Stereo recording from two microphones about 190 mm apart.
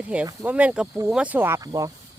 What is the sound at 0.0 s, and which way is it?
Speech, 5° right (ahead or behind).